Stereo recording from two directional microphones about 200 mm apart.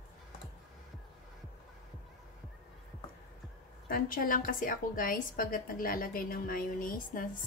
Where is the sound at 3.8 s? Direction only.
45° left (ahead or behind).